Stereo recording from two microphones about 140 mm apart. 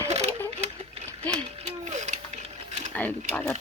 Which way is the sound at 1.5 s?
55° right (ahead or behind).